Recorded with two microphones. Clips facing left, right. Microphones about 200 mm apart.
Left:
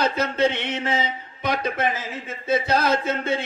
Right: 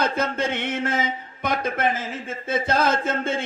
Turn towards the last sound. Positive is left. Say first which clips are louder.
# left 1 dB
turn(degrees=-50)  # may be behind; listen again after turning